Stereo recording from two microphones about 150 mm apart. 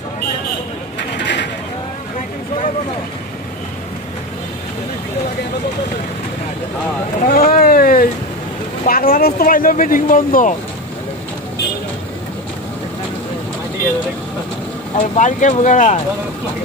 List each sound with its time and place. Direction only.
7.2 s a sound: 65° left (ahead or behind)
8.8 s speech: 75° left (ahead or behind)
15.0 s speech: 55° left (ahead or behind)